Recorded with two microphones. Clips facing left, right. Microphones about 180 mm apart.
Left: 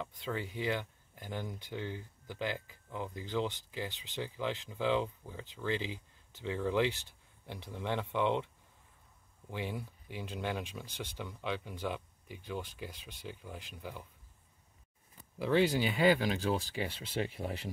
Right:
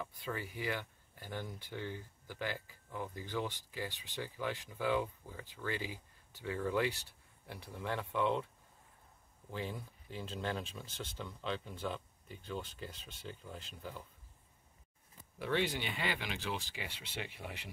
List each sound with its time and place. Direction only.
0.0 s speech: 20° left (ahead or behind)
9.5 s speech: 15° left (ahead or behind)
16.1 s speech: 40° left (ahead or behind)